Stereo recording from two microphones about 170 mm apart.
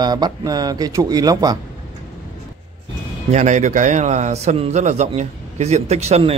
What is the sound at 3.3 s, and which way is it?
A man's voice, 45° right (ahead or behind).